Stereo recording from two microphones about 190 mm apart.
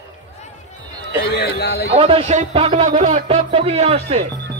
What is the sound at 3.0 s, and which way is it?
Speech, 40° right (ahead or behind).